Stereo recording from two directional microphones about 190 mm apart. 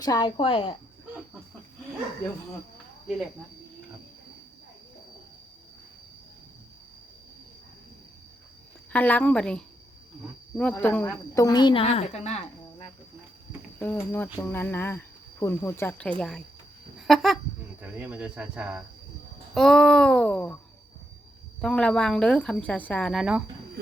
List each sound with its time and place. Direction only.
0.0 s a woman's voice: 20° left (ahead or behind)
8.9 s a woman's voice: 10° left (ahead or behind); by 12.4 s 35° left (ahead or behind)
13.7 s speech: 10° left (ahead or behind)
17.0 s a sound: centre (ahead or behind)
17.8 s a woman's voice: 10° right (ahead or behind); by 20.6 s 5° left (ahead or behind)
21.6 s a woman's voice: 5° left (ahead or behind)